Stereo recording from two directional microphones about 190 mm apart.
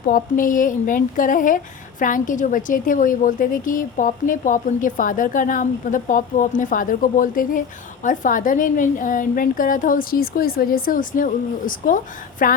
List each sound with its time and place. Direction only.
0.1 s speech: 45° left (ahead or behind)